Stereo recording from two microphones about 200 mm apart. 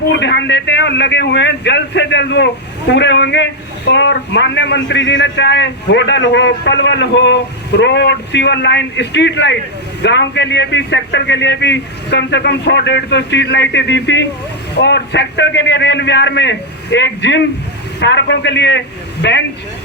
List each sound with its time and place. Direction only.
0.1 s a man's voice: 60° left (ahead or behind)